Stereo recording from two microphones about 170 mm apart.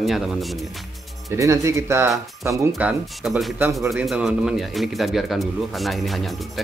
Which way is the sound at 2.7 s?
5° right (ahead or behind).